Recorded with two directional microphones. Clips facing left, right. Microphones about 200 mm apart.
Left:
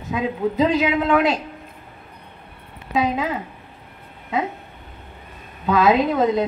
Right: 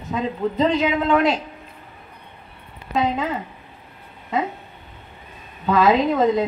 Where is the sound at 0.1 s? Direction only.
5° left (ahead or behind).